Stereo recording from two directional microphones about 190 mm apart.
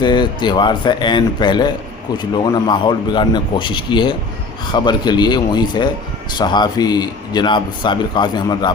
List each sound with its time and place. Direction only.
0.0 s speech: 25° left (ahead or behind)